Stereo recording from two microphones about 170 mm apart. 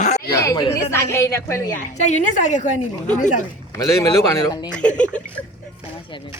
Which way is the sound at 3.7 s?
20° left (ahead or behind).